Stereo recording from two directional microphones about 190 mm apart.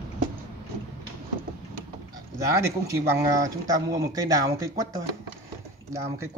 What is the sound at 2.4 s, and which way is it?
Speech, 15° right (ahead or behind).